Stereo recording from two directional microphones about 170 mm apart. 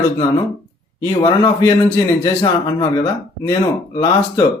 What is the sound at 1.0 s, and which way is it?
Speech, 20° left (ahead or behind).